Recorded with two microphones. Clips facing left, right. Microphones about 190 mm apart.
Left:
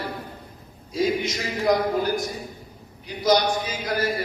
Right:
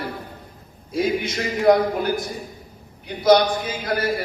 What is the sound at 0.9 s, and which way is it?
A man's voice, 55° right (ahead or behind).